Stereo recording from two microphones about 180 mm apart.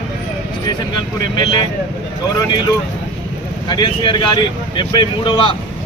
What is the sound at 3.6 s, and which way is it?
Speech, 25° left (ahead or behind).